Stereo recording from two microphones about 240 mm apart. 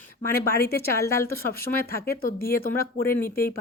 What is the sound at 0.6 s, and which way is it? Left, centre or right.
Speech, left.